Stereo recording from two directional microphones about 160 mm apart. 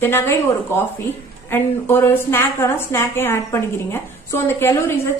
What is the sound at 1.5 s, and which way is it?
A woman's voice, 15° left (ahead or behind).